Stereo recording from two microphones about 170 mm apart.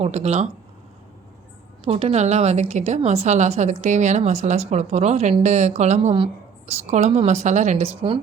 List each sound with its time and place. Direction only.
0.0 s a woman's voice: 40° right (ahead or behind)
1.8 s a woman's voice: 35° right (ahead or behind)